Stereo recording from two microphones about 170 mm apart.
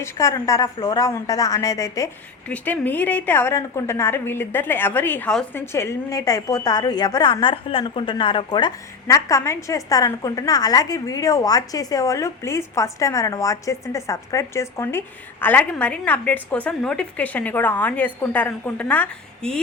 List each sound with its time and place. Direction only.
0.0 s a woman's voice: 15° left (ahead or behind)